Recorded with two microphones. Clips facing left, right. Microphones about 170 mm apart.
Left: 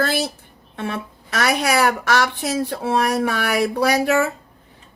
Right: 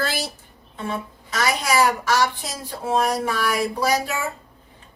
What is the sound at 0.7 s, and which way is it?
Speech, 70° left (ahead or behind).